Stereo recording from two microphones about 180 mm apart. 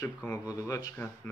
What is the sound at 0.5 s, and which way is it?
Speech, 20° left (ahead or behind).